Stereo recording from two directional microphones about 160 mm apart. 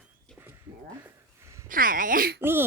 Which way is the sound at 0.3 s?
15° right (ahead or behind).